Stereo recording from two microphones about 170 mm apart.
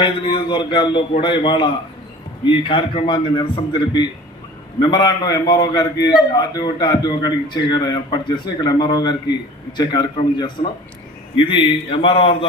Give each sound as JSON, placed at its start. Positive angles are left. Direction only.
{"t": 0.0, "sound": "a man's voice", "side_deg": 30}